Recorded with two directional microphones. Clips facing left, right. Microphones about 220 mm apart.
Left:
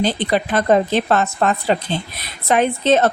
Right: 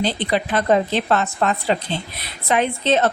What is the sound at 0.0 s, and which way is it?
Speech, 45° left (ahead or behind).